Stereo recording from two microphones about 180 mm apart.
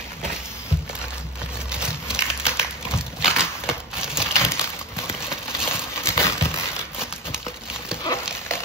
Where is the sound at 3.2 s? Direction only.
5° right (ahead or behind).